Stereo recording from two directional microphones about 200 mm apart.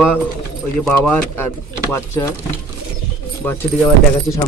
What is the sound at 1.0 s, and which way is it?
Speech, 10° left (ahead or behind).